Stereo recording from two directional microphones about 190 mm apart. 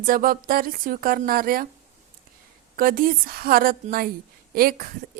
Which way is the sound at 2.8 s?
50° right (ahead or behind).